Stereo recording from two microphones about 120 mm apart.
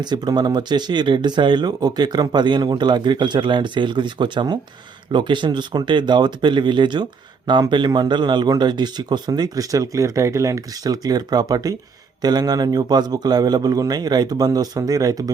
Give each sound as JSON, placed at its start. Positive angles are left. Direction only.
{"t": 0.0, "sound": "speech", "side_deg": -35}